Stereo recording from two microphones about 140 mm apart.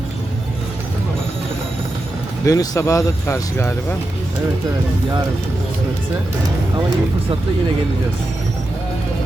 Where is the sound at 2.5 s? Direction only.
25° left (ahead or behind).